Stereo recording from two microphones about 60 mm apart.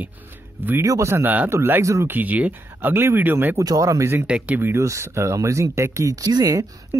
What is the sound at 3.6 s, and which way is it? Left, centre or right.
Speech, right.